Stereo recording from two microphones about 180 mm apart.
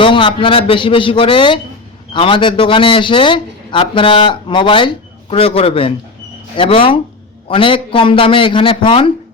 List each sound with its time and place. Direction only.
0.0 s a man's voice: 25° left (ahead or behind)